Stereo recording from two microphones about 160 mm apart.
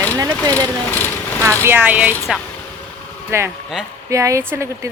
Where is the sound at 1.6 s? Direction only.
10° right (ahead or behind).